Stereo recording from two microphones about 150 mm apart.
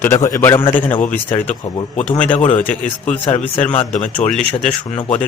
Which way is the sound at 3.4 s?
55° left (ahead or behind).